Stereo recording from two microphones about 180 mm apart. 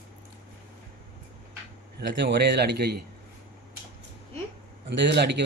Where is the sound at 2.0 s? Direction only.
70° right (ahead or behind).